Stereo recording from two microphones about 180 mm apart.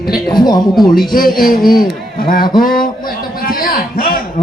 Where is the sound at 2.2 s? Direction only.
55° left (ahead or behind).